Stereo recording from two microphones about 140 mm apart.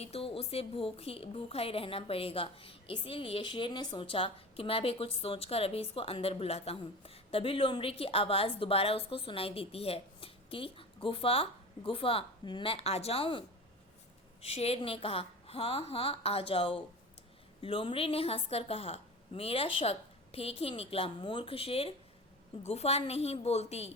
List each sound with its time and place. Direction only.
0.0 s a woman's voice: 45° left (ahead or behind)
14.4 s a woman's voice: 45° left (ahead or behind)